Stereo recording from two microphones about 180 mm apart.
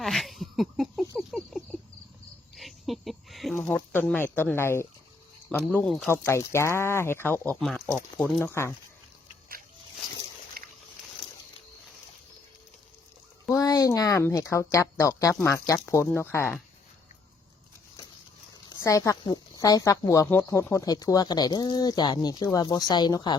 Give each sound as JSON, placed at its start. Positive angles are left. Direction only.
{"t": 0.0, "sound": "a sound", "side_deg": 0}
{"t": 1.3, "sound": "cricket", "side_deg": 5}
{"t": 5.7, "sound": "speech", "side_deg": 0}
{"t": 6.1, "sound": "speech", "side_deg": 15}
{"t": 10.6, "sound": "boat", "side_deg": -55}
{"t": 13.5, "sound": "speech", "side_deg": 20}
{"t": 18.7, "sound": "a woman's voice", "side_deg": 20}